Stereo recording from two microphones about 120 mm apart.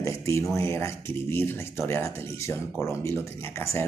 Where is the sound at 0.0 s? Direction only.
25° left (ahead or behind).